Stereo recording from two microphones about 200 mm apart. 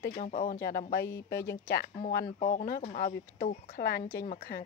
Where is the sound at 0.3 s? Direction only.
45° left (ahead or behind).